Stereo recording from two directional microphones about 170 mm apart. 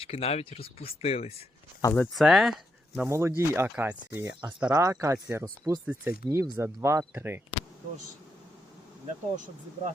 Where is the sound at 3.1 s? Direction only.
15° right (ahead or behind).